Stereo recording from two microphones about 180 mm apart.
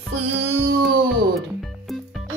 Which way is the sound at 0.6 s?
65° right (ahead or behind).